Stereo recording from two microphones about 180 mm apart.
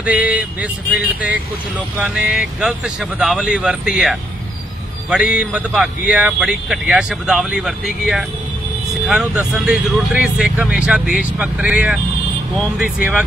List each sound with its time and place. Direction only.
0.0 s vehicle: 5° right (ahead or behind)
2.0 s speech: 5° right (ahead or behind)